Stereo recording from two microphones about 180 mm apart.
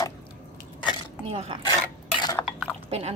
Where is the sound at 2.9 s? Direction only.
35° right (ahead or behind).